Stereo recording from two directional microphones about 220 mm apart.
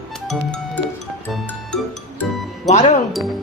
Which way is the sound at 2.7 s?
30° left (ahead or behind).